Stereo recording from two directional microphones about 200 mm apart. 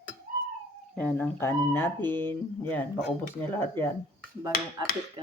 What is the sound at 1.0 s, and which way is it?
Speech, 5° left (ahead or behind).